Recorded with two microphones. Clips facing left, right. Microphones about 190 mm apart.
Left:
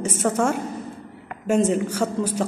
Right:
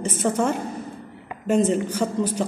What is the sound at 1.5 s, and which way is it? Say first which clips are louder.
Speech: even; 10° left (ahead or behind).